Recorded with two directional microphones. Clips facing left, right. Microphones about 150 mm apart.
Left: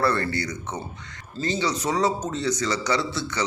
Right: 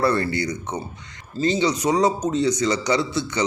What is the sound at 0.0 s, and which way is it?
A man's voice, 15° right (ahead or behind).